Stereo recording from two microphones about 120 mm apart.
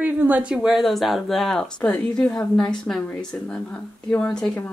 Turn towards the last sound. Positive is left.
turn(degrees=5)  # may be behind; listen again after turning